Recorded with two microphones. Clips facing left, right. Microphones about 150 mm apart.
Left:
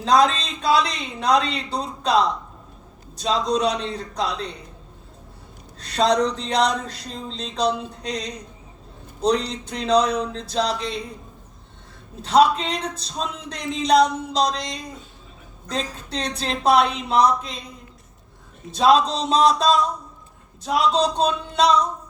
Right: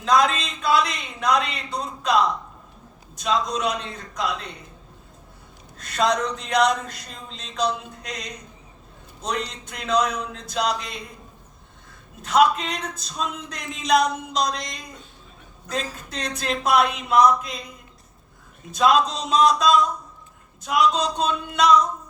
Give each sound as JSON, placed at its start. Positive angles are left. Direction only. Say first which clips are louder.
{"t": 0.0, "sound": "speech", "louder": "left 2 dB", "side_deg": 35}
{"t": 5.8, "sound": "speech", "louder": "left 3 dB", "side_deg": 30}
{"t": 12.2, "sound": "speech", "louder": "left 2 dB", "side_deg": 30}
{"t": 18.7, "sound": "speech", "louder": "left 2 dB", "side_deg": 30}